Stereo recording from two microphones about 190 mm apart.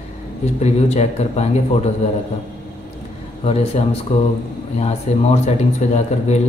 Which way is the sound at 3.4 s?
30° left (ahead or behind).